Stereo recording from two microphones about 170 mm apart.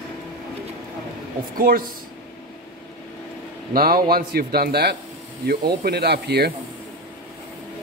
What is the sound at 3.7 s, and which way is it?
A man's voice, 55° right (ahead or behind).